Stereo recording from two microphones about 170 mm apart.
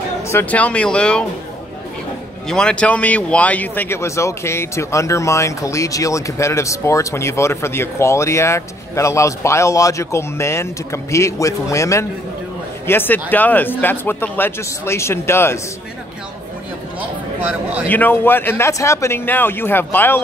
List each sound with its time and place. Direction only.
0.3 s speech: 10° left (ahead or behind)
2.4 s speech: 5° left (ahead or behind)
17.8 s speech: 10° left (ahead or behind)